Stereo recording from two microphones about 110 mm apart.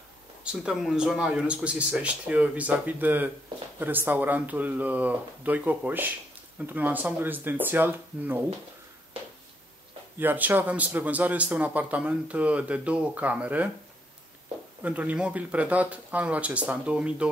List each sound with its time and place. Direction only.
0.4 s a man's voice: 5° right (ahead or behind)
10.1 s a man's voice: 15° right (ahead or behind)
14.8 s a man's voice: 15° right (ahead or behind)